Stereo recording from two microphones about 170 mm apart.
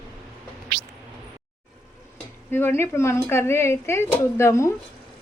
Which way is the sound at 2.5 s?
15° left (ahead or behind).